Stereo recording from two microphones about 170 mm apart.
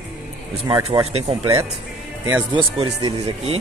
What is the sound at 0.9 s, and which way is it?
Speech, 35° right (ahead or behind).